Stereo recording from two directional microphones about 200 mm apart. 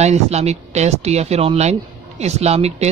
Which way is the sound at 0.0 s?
35° right (ahead or behind).